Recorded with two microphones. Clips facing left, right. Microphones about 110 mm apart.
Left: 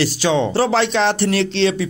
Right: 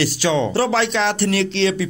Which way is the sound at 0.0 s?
25° left (ahead or behind).